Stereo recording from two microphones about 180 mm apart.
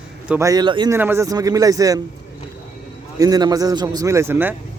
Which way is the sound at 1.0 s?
15° right (ahead or behind).